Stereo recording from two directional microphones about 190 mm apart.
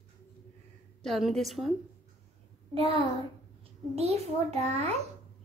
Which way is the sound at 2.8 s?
30° right (ahead or behind).